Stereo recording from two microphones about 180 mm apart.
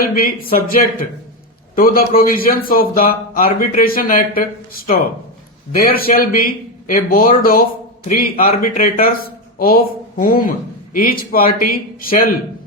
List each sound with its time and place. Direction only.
0.0 s a woman's voice: 55° left (ahead or behind)